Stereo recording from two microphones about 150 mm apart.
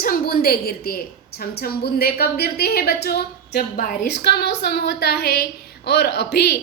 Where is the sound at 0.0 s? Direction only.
85° left.